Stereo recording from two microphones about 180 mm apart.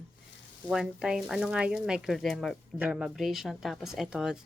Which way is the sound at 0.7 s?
5° right (ahead or behind).